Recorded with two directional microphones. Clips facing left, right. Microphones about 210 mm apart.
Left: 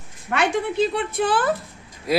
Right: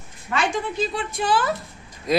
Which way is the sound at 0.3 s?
60° left (ahead or behind).